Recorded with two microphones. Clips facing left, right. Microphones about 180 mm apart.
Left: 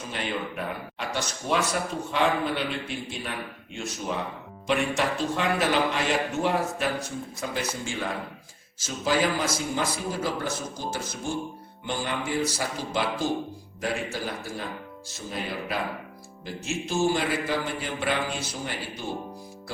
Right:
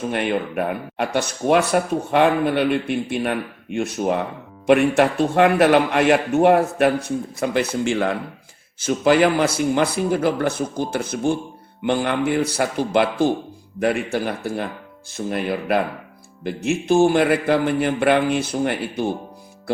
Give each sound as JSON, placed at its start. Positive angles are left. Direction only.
{"t": 0.1, "sound": "speech", "side_deg": -60}